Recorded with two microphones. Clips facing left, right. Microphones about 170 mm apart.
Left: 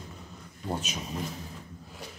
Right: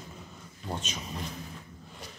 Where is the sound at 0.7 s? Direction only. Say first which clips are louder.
Left 3 dB; 5° left (ahead or behind).